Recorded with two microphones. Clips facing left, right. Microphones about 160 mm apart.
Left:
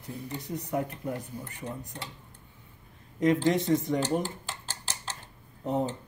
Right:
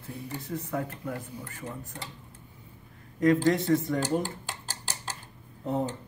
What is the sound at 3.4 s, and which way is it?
Speech, 20° left (ahead or behind).